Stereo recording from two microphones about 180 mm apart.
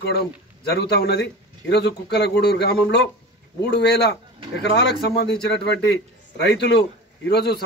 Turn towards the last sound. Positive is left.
turn(degrees=65)  # may be behind; listen again after turning